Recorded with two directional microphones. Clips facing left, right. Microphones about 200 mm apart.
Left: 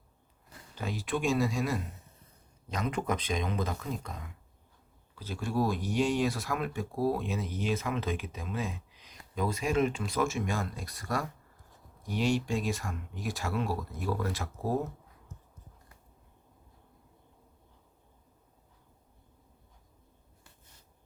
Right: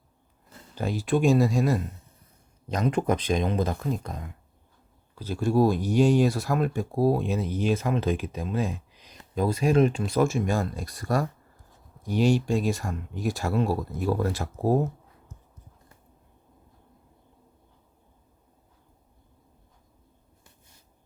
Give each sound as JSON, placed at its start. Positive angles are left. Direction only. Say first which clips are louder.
{"t": 0.8, "sound": "speech", "louder": "right 8 dB", "side_deg": -35}